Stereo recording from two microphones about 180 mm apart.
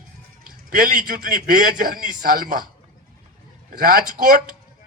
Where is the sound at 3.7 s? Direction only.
55° right (ahead or behind).